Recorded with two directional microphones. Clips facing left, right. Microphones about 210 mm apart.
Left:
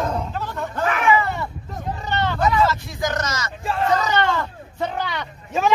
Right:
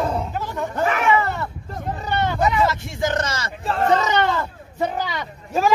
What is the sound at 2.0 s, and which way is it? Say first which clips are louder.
Speech: even; 10° right (ahead or behind).